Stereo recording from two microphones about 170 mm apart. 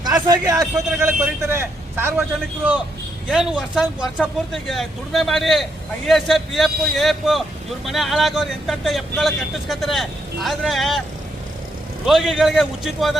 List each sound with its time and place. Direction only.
0.0 s a man's voice: 25° right (ahead or behind); by 11.0 s centre (ahead or behind)
12.0 s speech: centre (ahead or behind)